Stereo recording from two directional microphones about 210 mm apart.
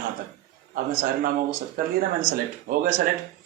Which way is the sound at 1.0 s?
45° right (ahead or behind).